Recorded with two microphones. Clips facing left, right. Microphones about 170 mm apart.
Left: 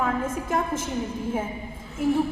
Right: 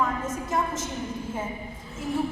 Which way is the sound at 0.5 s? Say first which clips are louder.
Left 1 dB; 55° left (ahead or behind).